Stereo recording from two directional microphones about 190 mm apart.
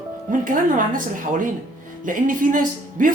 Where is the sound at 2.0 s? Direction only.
45° right (ahead or behind).